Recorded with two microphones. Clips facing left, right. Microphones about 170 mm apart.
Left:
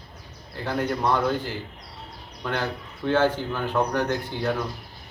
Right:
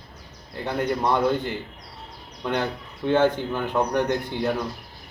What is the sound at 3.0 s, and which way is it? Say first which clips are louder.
Speech: right 2 dB; 15° right (ahead or behind).